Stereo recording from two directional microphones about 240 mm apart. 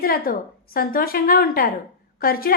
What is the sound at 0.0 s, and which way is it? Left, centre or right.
A woman's voice, left.